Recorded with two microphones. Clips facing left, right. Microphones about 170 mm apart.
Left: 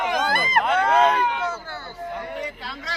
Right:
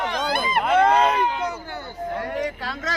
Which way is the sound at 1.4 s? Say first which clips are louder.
Right 1 dB; 15° right (ahead or behind).